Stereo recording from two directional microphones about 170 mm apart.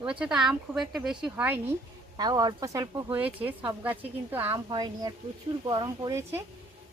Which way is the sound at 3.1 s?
10° right (ahead or behind).